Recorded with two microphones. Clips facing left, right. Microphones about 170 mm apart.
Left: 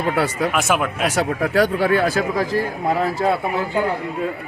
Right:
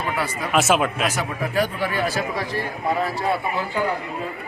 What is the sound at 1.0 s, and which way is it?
Speech, 85° left.